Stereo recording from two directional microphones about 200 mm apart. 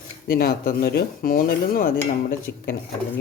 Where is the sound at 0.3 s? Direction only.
50° left (ahead or behind).